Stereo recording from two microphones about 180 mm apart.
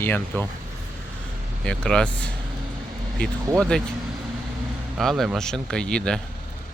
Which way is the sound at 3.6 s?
5° left (ahead or behind).